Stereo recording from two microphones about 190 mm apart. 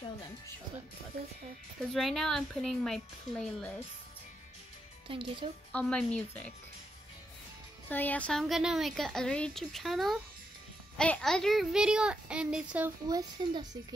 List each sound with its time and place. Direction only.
2.0 s a woman's voice: centre (ahead or behind)
5.0 s speech: 25° right (ahead or behind)
5.7 s a woman's voice: 5° left (ahead or behind)
7.9 s a woman's voice: 10° left (ahead or behind)
13.1 s speech: 20° right (ahead or behind)